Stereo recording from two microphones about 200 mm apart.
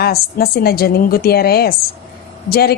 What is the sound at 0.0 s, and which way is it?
A woman's voice, 50° left (ahead or behind).